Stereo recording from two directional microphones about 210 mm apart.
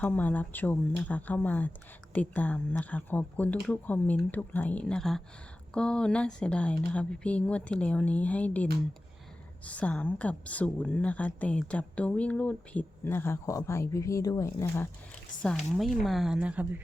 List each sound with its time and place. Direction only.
0.0 s a woman's voice: 10° left (ahead or behind)
9.6 s a woman's voice: 5° left (ahead or behind)
15.4 s speech: centre (ahead or behind)